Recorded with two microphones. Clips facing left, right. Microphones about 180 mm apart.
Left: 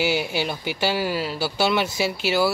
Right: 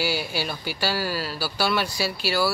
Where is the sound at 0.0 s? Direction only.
20° left (ahead or behind).